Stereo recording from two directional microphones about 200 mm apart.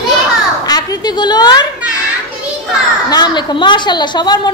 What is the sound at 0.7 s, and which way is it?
Speech, 20° left (ahead or behind).